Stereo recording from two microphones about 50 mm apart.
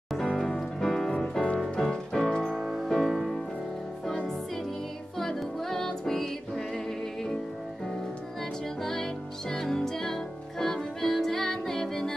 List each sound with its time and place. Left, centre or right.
0.4 s music: centre
1.6 s music: centre
2.4 s music: centre
2.9 s music: centre
5.2 s music: centre
9.5 s music: centre